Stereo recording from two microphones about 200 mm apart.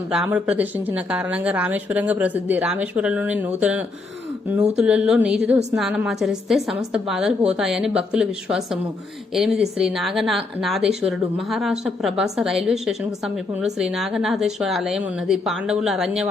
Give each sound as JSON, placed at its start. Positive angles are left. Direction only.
{"t": 0.1, "sound": "a woman's voice", "side_deg": -5}